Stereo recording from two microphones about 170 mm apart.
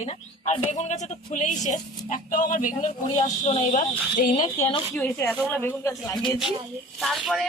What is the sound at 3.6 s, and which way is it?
Speech, 45° left (ahead or behind).